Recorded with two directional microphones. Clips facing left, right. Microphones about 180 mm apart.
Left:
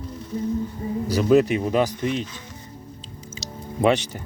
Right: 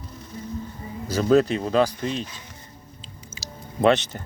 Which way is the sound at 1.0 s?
10° left (ahead or behind).